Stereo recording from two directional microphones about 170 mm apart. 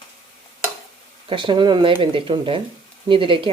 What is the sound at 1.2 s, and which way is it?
Speech, 30° right (ahead or behind).